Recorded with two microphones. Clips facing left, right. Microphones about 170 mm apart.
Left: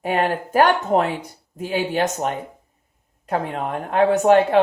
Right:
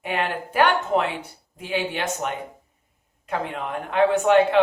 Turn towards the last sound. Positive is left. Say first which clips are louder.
# left 3 dB
turn(degrees=40)  # may be behind; listen again after turning